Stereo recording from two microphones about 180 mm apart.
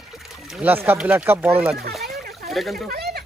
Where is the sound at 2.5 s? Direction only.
Centre (ahead or behind).